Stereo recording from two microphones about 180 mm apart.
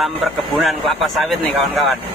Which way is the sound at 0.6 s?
Centre (ahead or behind).